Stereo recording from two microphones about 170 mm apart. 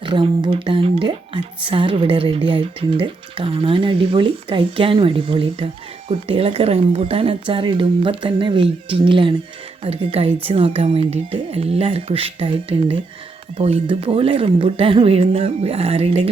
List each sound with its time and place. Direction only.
0.0 s speech: 30° right (ahead or behind)